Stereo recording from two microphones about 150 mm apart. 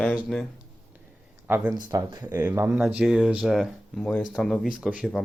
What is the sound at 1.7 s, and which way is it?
Speech, 30° right (ahead or behind).